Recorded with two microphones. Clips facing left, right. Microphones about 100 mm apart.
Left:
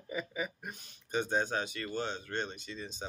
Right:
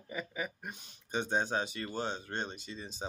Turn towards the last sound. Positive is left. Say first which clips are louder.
# right 2 dB
turn(degrees=-20)  # may be behind; listen again after turning